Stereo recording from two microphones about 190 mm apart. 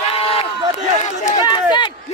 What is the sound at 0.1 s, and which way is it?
Run, 30° left (ahead or behind).